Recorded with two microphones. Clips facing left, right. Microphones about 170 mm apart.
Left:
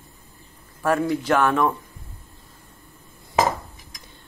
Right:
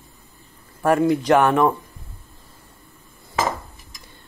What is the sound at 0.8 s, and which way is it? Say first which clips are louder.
Speech: right 4 dB; 15° right (ahead or behind).